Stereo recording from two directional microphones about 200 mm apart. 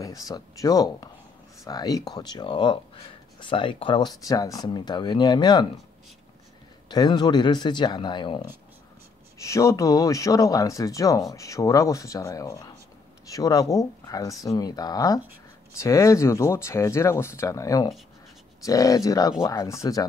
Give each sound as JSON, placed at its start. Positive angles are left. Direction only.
{"t": 0.0, "sound": "speech", "side_deg": 15}
{"t": 6.9, "sound": "speech", "side_deg": 20}